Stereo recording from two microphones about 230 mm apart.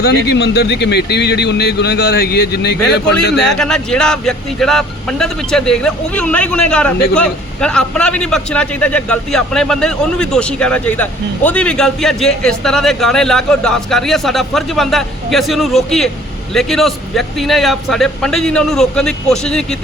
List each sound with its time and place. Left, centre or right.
0.0 s speech: left
3.4 s speech: centre